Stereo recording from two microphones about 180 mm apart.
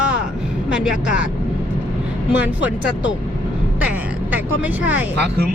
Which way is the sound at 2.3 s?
10° right (ahead or behind).